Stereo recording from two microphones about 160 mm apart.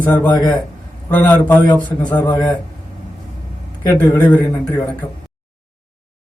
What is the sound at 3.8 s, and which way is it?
Speech, 20° left (ahead or behind).